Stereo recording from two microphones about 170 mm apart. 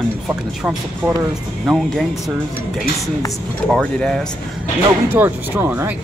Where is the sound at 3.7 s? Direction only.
5° left (ahead or behind).